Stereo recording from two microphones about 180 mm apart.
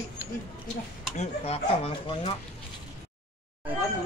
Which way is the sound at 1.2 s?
35° left (ahead or behind).